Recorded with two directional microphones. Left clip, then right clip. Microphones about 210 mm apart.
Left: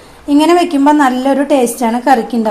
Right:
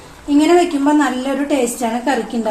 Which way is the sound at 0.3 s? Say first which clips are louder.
Left 3 dB; 50° left (ahead or behind).